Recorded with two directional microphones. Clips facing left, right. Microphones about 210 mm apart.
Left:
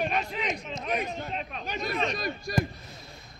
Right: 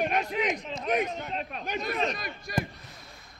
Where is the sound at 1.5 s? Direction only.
Centre (ahead or behind).